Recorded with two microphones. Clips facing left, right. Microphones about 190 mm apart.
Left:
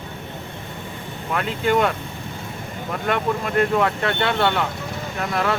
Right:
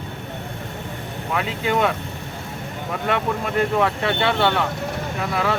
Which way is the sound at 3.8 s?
5° right (ahead or behind).